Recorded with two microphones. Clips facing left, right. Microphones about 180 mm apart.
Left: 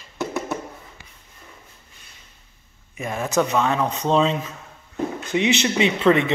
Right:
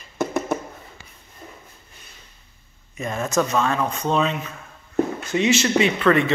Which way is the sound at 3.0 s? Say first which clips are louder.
Even; 15° left (ahead or behind).